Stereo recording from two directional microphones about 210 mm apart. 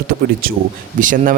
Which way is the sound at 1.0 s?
40° right (ahead or behind).